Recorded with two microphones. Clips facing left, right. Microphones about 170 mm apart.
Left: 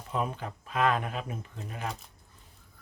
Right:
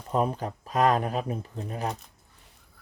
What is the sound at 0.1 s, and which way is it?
Speech, 40° right (ahead or behind).